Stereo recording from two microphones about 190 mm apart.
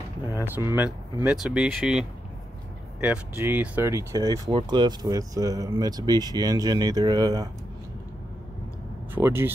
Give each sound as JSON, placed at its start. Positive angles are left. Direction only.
{"t": 0.3, "sound": "speech", "side_deg": -15}
{"t": 9.1, "sound": "speech", "side_deg": -10}